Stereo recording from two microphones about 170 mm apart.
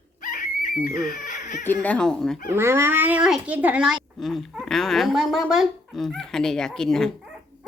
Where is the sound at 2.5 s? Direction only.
15° right (ahead or behind).